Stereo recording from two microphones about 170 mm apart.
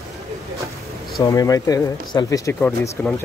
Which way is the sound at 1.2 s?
20° left (ahead or behind).